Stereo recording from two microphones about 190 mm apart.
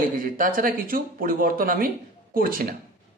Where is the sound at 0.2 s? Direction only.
45° right (ahead or behind).